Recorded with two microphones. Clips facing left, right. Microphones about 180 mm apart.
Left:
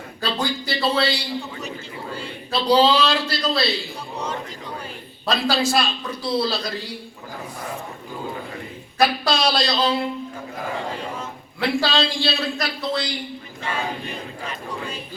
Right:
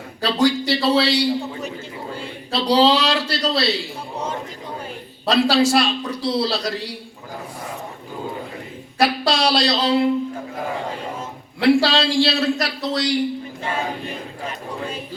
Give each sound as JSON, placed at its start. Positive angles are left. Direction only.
{"t": 0.2, "sound": "a man's voice", "side_deg": -80}
{"t": 2.5, "sound": "a man's voice", "side_deg": -75}
{"t": 5.2, "sound": "a man's voice", "side_deg": -75}
{"t": 9.0, "sound": "a man's voice", "side_deg": -75}
{"t": 11.6, "sound": "a man's voice", "side_deg": -75}